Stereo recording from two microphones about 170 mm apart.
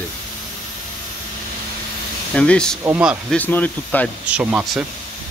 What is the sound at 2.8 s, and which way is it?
Speech, 10° right (ahead or behind).